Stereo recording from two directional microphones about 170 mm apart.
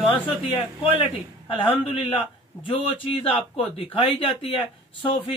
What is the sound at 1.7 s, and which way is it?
A man's voice, 30° left (ahead or behind).